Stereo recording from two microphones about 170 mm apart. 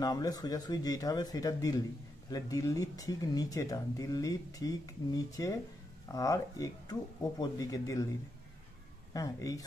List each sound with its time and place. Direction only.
0.0 s speech: 20° left (ahead or behind)
9.1 s speech: 20° left (ahead or behind)